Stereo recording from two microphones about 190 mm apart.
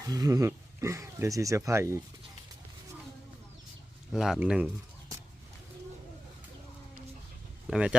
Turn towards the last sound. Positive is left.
turn(degrees=-5)  # may be behind; listen again after turning